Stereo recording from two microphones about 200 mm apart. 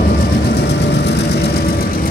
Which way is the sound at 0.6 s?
55° left (ahead or behind).